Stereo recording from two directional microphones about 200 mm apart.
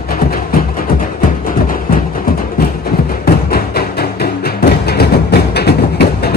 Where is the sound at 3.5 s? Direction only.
50° left (ahead or behind).